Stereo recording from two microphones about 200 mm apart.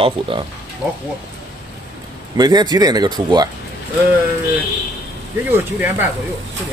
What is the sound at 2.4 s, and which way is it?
Speech, 20° right (ahead or behind).